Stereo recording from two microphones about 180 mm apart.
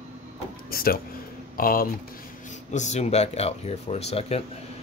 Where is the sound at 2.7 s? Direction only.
40° left (ahead or behind).